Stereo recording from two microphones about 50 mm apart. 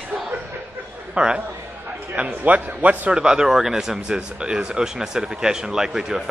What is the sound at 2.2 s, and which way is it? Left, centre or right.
Speech, right.